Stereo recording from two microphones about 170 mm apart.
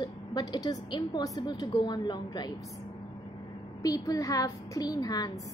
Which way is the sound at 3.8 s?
20° left (ahead or behind).